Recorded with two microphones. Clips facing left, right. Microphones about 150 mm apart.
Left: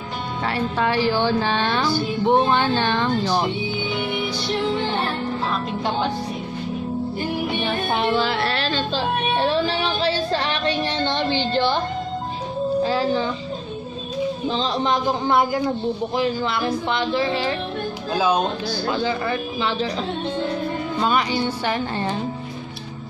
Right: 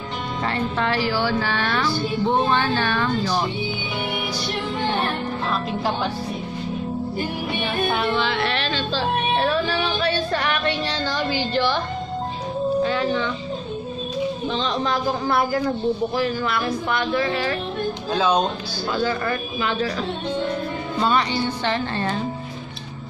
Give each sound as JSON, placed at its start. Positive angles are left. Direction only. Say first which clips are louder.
{"t": 0.5, "sound": "music", "louder": "left 2 dB", "side_deg": 15}
{"t": 7.9, "sound": "music", "louder": "left 4 dB", "side_deg": 25}
{"t": 8.2, "sound": "speech", "louder": "left 1 dB", "side_deg": 40}
{"t": 8.9, "sound": "music", "louder": "right 2 dB", "side_deg": 25}
{"t": 12.8, "sound": "speech", "louder": "left 1 dB", "side_deg": 35}
{"t": 14.5, "sound": "speech", "louder": "left 1 dB", "side_deg": 35}
{"t": 14.9, "sound": "speech", "louder": "left 4 dB", "side_deg": 20}
{"t": 18.1, "sound": "music", "louder": "even", "side_deg": 5}
{"t": 18.9, "sound": "speech", "louder": "right 1 dB", "side_deg": 20}
{"t": 21.0, "sound": "music", "louder": "right 1 dB", "side_deg": 5}